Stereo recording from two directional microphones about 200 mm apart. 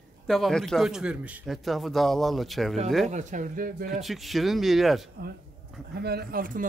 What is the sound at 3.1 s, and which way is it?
Speech, 35° right (ahead or behind).